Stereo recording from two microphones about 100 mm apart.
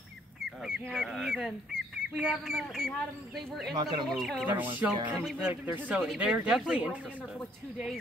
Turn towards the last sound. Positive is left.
turn(degrees=-5)  # may be behind; listen again after turning